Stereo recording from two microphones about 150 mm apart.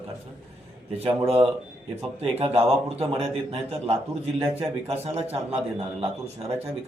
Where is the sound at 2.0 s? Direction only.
40° right (ahead or behind).